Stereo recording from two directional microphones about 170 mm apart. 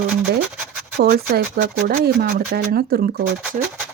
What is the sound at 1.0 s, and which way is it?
Speech, 65° right (ahead or behind).